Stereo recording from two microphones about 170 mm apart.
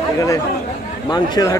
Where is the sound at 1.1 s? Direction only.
25° left (ahead or behind).